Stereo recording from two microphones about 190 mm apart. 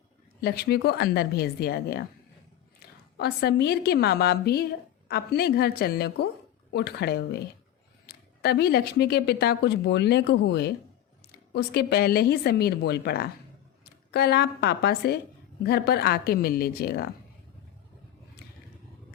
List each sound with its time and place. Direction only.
0.4 s speech: 55° left (ahead or behind)
3.2 s a woman's voice: 60° left (ahead or behind)